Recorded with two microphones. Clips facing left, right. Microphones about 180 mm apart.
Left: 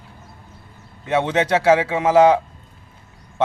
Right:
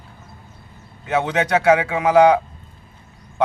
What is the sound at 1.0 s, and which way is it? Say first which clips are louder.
A man's voice: left 1 dB; 30° left (ahead or behind).